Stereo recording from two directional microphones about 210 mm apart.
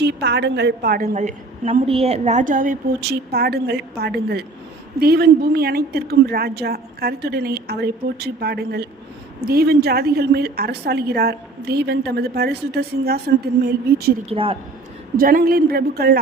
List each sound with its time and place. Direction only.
0.0 s a woman's voice: 55° right (ahead or behind)
14.3 s a woman's voice: 25° right (ahead or behind)
15.1 s a woman's voice: 40° right (ahead or behind)